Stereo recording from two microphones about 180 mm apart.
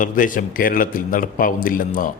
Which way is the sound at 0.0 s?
45° left (ahead or behind).